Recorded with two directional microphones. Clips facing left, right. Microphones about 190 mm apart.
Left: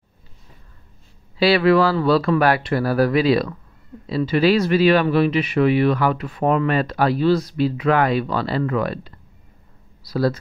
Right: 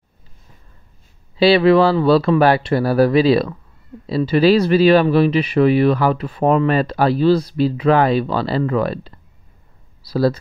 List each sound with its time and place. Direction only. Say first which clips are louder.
1.4 s speech: right 3 dB; 25° right (ahead or behind)